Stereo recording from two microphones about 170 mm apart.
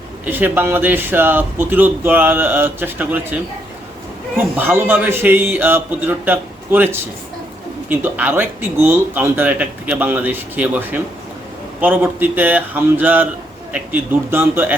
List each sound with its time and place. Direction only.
0.3 s speech: 10° right (ahead or behind)
4.4 s speech: 10° right (ahead or behind)